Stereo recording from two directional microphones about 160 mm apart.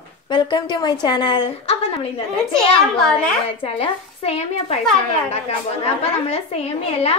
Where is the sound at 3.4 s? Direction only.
35° left (ahead or behind).